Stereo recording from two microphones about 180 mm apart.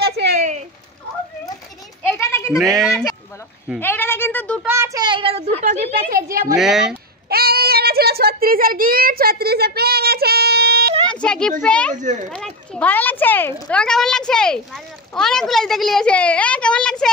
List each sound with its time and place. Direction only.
0.4 s a sound: 40° right (ahead or behind)
2.0 s children playing: 15° left (ahead or behind)
2.8 s speech: centre (ahead or behind)
3.8 s speech: 10° left (ahead or behind)
4.6 s a child's voice: 15° right (ahead or behind); by 6.2 s 45° right (ahead or behind)
6.6 s speech: centre (ahead or behind)
7.2 s a sound: 60° right (ahead or behind)
11.1 s a sound: 5° left (ahead or behind)
11.6 s speech: 5° left (ahead or behind)
11.9 s a child's voice: 40° right (ahead or behind)
12.3 s speech: 5° left (ahead or behind)